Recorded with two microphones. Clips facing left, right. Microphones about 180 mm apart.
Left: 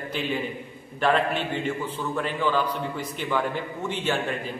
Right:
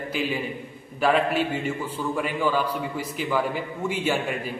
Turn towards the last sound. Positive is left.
turn(degrees=-10)  # may be behind; listen again after turning